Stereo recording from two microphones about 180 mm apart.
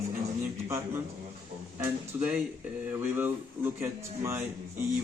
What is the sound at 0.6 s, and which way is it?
Speech, 15° right (ahead or behind).